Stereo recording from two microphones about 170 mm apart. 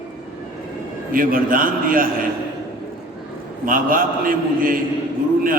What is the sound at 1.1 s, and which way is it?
Speech, 55° right (ahead or behind).